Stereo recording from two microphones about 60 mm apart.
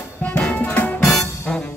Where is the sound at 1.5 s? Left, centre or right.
Centre.